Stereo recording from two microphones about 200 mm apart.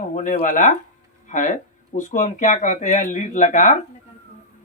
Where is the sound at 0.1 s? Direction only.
40° left (ahead or behind).